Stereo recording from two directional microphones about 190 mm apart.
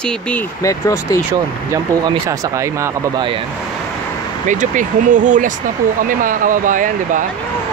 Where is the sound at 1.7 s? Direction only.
20° right (ahead or behind).